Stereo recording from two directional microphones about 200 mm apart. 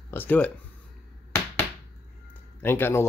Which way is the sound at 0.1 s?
10° left (ahead or behind).